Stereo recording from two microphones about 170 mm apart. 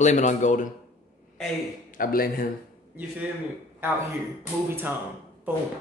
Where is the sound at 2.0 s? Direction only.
60° left (ahead or behind).